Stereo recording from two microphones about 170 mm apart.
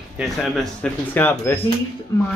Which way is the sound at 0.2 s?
Centre (ahead or behind).